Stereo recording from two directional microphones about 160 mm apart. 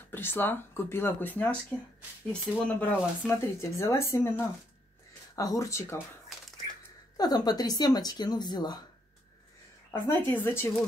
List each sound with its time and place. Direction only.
0.1 s speech: 15° left (ahead or behind)
2.6 s speech: 10° left (ahead or behind)
7.2 s speech: 25° left (ahead or behind)
9.8 s speech: 15° left (ahead or behind)